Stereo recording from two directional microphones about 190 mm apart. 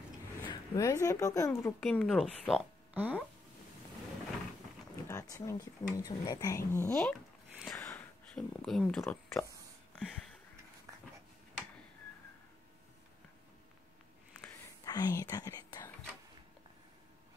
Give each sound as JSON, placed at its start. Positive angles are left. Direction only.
{"t": 0.5, "sound": "a woman's voice", "side_deg": 15}
{"t": 1.8, "sound": "speech", "side_deg": 0}
{"t": 5.0, "sound": "speech", "side_deg": 15}
{"t": 6.9, "sound": "a sound", "side_deg": 5}
{"t": 9.0, "sound": "speech", "side_deg": 15}
{"t": 9.9, "sound": "a sound", "side_deg": 5}
{"t": 14.9, "sound": "speech", "side_deg": 20}